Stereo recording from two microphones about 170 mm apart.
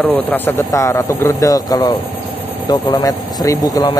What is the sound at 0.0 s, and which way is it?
Speech, 10° left (ahead or behind).